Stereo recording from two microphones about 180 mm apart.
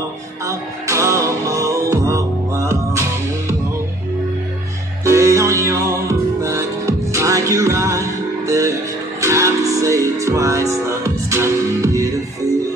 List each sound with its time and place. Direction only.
0.5 s music: 15° right (ahead or behind)
5.0 s music: 15° right (ahead or behind)